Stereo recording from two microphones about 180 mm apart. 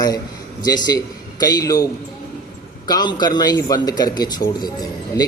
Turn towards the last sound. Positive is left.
turn(degrees=20)  # may be behind; listen again after turning